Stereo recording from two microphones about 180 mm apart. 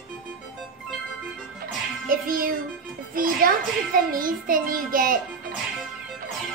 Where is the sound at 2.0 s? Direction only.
55° right (ahead or behind).